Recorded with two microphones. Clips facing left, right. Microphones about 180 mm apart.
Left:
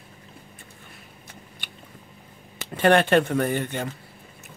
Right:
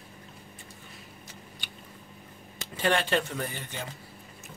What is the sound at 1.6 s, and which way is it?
Biting, 55° left (ahead or behind).